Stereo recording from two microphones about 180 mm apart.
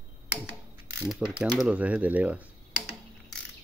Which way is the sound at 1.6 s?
5° right (ahead or behind).